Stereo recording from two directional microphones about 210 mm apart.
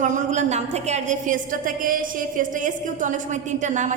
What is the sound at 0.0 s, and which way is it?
A woman's voice, 35° right (ahead or behind).